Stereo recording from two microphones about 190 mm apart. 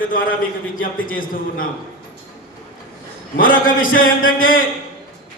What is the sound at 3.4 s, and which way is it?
Speech, 45° left (ahead or behind).